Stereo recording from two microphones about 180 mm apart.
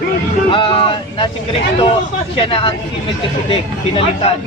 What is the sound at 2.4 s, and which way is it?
Speech, 30° left (ahead or behind).